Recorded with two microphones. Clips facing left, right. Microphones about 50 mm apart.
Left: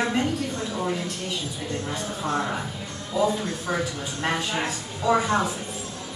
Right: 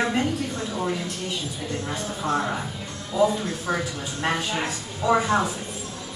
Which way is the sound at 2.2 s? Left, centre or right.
Centre.